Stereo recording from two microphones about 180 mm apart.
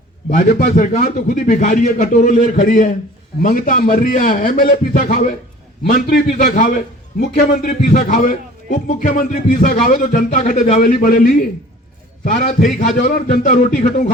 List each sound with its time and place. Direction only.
0.3 s a man's voice: 45° left (ahead or behind)